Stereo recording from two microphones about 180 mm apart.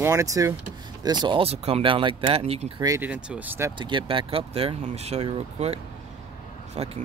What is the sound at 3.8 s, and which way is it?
Speech, 25° right (ahead or behind).